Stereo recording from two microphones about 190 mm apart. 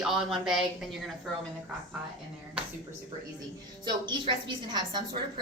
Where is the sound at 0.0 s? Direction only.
Centre (ahead or behind).